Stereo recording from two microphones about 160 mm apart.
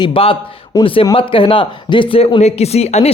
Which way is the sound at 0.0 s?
35° left (ahead or behind).